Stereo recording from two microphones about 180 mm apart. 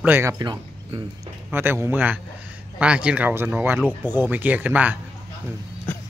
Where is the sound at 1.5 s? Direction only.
10° right (ahead or behind).